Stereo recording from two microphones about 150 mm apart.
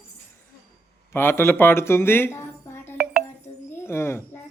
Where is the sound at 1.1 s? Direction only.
15° left (ahead or behind).